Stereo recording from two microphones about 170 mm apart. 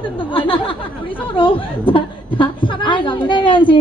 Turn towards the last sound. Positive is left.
turn(degrees=30)  # may be behind; listen again after turning